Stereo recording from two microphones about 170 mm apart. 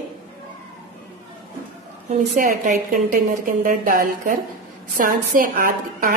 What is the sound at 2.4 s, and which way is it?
A woman's voice, 55° right (ahead or behind).